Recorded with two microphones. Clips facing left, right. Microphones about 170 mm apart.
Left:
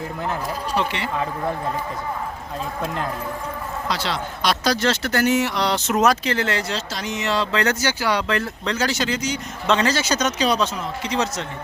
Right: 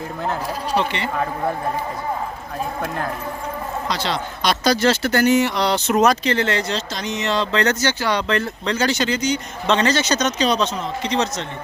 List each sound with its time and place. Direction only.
0.8 s speech: centre (ahead or behind)
2.8 s speech: 20° left (ahead or behind)
3.8 s speech: 5° left (ahead or behind)